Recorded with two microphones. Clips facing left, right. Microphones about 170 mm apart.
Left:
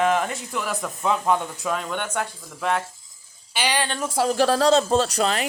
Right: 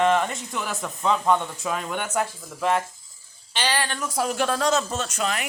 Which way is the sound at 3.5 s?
15° left (ahead or behind).